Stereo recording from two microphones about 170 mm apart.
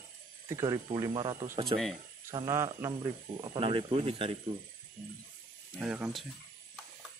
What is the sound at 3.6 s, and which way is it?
Speech, 35° right (ahead or behind).